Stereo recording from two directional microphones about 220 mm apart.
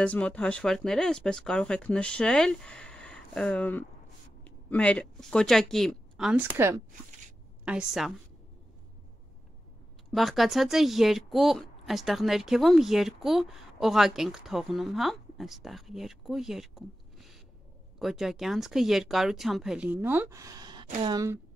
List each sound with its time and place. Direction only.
0.0 s a woman's voice: 5° left (ahead or behind)
10.1 s a woman's voice: centre (ahead or behind); by 21.4 s 15° right (ahead or behind)